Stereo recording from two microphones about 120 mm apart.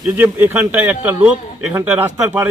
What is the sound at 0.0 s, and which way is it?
A man's voice, 15° right (ahead or behind).